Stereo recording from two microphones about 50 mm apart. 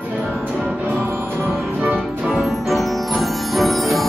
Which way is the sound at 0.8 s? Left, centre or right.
Right.